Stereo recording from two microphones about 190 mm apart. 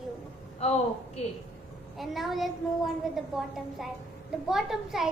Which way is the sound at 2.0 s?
Centre (ahead or behind).